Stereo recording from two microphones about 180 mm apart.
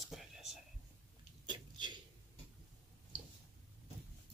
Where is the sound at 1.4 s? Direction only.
25° right (ahead or behind).